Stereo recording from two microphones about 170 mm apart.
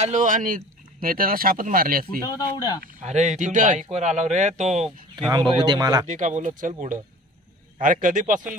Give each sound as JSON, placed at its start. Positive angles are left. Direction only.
{"t": 0.0, "sound": "speech", "side_deg": -45}
{"t": 2.2, "sound": "speech", "side_deg": 25}
{"t": 2.8, "sound": "speech", "side_deg": -45}
{"t": 5.3, "sound": "speech", "side_deg": -25}
{"t": 6.0, "sound": "speech", "side_deg": -45}